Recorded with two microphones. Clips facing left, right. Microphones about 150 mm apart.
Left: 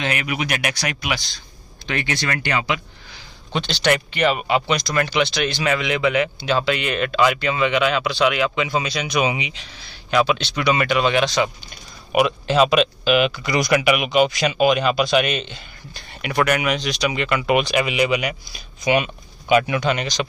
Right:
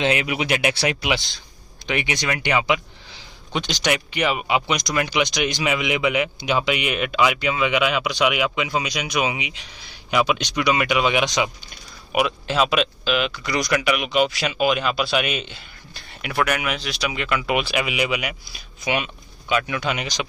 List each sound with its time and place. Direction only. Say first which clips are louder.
0.0 s speech: right 3 dB; 20° right (ahead or behind)
12.1 s speech: left 4 dB; centre (ahead or behind)